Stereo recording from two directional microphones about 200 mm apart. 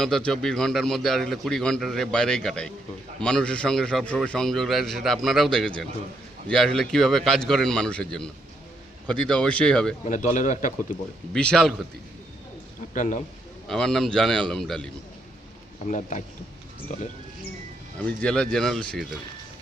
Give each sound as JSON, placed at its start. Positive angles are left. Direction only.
{"t": 0.0, "sound": "a man's voice", "side_deg": 5}
{"t": 10.1, "sound": "speech", "side_deg": 40}
{"t": 11.3, "sound": "a man's voice", "side_deg": 5}
{"t": 12.9, "sound": "a man's voice", "side_deg": 40}
{"t": 13.7, "sound": "a man's voice", "side_deg": 0}
{"t": 15.9, "sound": "speech", "side_deg": 40}
{"t": 18.0, "sound": "a man's voice", "side_deg": 5}